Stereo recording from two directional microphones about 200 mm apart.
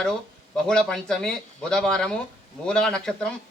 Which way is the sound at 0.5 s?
5° left (ahead or behind).